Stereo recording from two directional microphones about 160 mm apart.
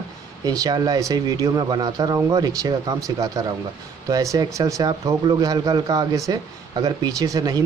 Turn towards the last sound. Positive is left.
turn(degrees=-25)  # may be behind; listen again after turning